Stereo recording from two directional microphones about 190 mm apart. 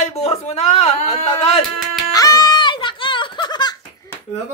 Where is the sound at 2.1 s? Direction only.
20° left (ahead or behind).